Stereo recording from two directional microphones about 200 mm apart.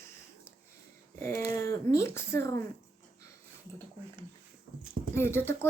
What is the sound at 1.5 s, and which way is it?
Speech, 15° left (ahead or behind).